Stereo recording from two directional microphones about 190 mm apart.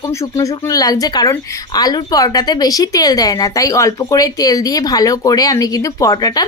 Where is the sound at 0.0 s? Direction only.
15° left (ahead or behind).